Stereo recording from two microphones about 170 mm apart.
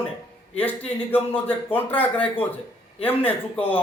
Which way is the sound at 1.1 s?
10° left (ahead or behind).